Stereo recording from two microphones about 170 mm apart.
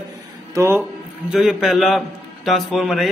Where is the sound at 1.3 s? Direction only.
Centre (ahead or behind).